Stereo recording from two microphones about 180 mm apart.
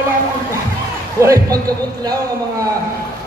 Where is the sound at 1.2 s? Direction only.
20° right (ahead or behind).